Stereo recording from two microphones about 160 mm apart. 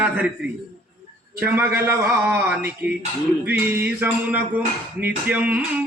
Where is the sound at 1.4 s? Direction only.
15° right (ahead or behind).